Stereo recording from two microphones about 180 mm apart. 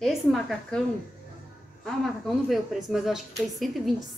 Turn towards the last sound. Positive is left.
turn(degrees=0)  # may be behind; listen again after turning